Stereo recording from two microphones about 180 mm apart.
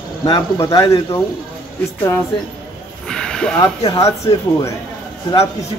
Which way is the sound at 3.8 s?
20° left (ahead or behind).